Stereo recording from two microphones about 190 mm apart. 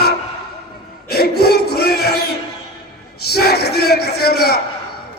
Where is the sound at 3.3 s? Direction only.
55° left (ahead or behind).